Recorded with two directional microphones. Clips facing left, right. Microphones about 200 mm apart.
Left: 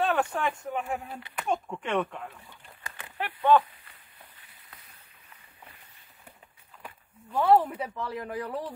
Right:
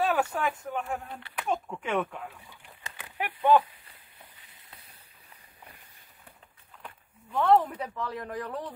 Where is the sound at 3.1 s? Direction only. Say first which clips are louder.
Even; 15° right (ahead or behind).